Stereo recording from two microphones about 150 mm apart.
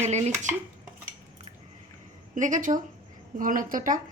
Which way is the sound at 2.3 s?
60° right (ahead or behind).